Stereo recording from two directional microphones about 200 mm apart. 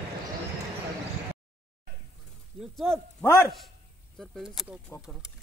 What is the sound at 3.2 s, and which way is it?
Speech, 15° left (ahead or behind).